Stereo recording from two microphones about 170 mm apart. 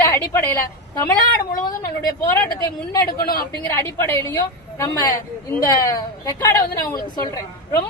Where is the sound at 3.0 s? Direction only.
60° left (ahead or behind).